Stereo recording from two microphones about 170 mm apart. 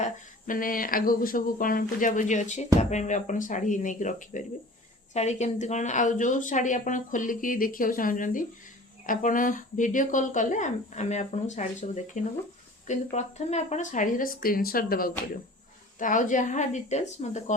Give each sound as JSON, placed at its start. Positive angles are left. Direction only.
{"t": 0.0, "sound": "speech", "side_deg": 50}